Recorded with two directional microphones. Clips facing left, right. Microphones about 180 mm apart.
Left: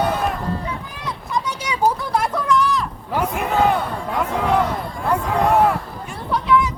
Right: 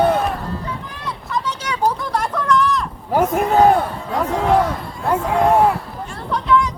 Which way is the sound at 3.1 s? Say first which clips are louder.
Right 6 dB; 45° right (ahead or behind).